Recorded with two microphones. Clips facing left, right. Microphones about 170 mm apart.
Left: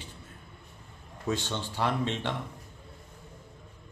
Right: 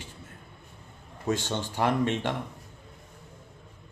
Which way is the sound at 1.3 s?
45° right (ahead or behind).